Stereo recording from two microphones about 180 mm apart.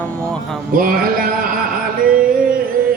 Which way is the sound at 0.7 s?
50° right (ahead or behind).